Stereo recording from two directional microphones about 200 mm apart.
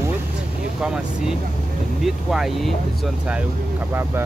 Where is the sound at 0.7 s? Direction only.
5° right (ahead or behind).